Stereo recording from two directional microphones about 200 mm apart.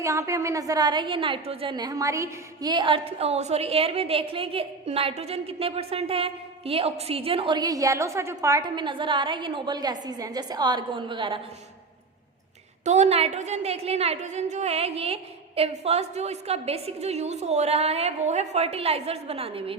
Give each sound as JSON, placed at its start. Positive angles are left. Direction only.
{"t": 0.0, "sound": "a woman's voice", "side_deg": -15}
{"t": 12.8, "sound": "a woman's voice", "side_deg": -35}